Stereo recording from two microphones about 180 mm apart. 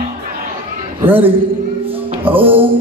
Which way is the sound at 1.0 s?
10° right (ahead or behind).